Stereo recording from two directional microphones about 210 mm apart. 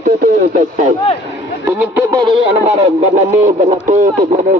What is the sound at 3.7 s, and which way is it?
Speech, 40° right (ahead or behind).